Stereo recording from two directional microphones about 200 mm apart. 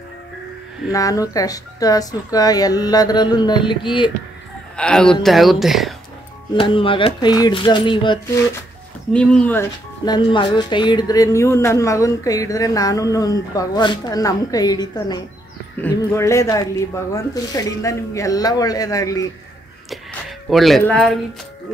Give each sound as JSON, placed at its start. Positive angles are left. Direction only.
{"t": 0.9, "sound": "speech", "side_deg": 15}
{"t": 4.7, "sound": "speech", "side_deg": 5}
{"t": 6.5, "sound": "speech", "side_deg": 25}
{"t": 9.1, "sound": "speech", "side_deg": 5}
{"t": 10.0, "sound": "speech", "side_deg": 20}
{"t": 19.9, "sound": "a sound", "side_deg": 0}